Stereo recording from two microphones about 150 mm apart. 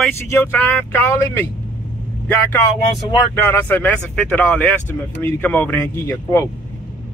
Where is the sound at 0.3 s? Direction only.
15° left (ahead or behind).